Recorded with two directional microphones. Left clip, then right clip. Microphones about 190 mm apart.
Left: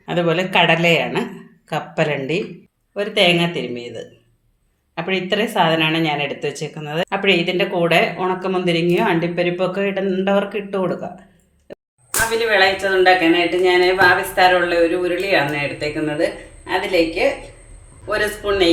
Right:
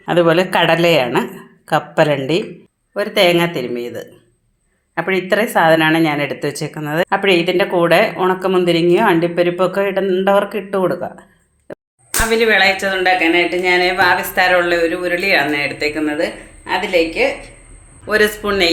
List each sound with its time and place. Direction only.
0.0 s speech: 35° right (ahead or behind)
12.5 s speech: 60° right (ahead or behind)